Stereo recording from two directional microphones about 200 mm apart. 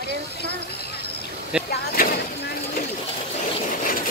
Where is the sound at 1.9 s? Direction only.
45° left (ahead or behind).